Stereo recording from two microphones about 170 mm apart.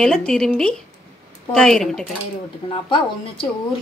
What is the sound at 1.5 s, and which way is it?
Speech, 5° left (ahead or behind).